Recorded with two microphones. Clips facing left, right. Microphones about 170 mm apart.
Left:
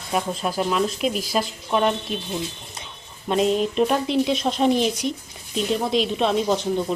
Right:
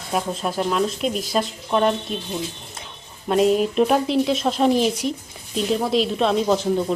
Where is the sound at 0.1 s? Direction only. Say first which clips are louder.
Even; centre (ahead or behind).